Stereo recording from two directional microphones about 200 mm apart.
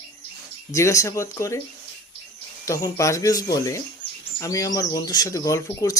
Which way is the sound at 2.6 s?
15° left (ahead or behind).